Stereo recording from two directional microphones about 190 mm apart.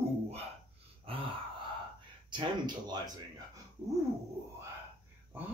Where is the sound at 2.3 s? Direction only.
25° right (ahead or behind).